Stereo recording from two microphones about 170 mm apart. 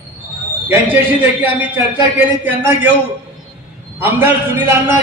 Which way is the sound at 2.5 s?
10° right (ahead or behind).